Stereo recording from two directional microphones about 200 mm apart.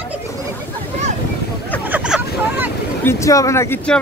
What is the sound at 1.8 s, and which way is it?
Vehicle, 5° right (ahead or behind).